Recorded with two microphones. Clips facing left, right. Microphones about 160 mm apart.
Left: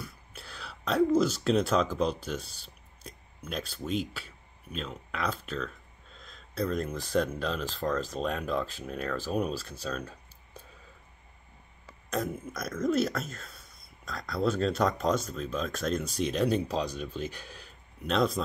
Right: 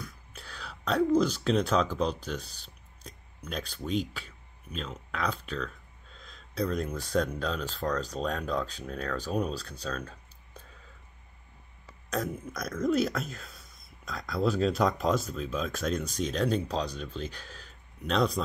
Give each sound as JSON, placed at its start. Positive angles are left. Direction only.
{"t": 0.0, "sound": "speech", "side_deg": 5}
{"t": 12.1, "sound": "speech", "side_deg": 5}